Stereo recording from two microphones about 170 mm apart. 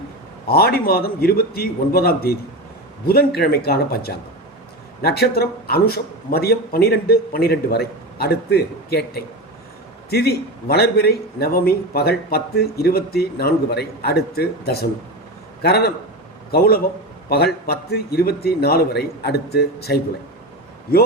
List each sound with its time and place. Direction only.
0.4 s a man's voice: 65° left (ahead or behind)